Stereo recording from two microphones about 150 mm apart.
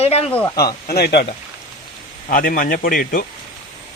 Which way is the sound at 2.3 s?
65° left (ahead or behind).